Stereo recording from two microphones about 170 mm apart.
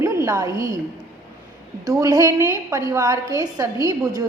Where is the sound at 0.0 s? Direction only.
15° right (ahead or behind).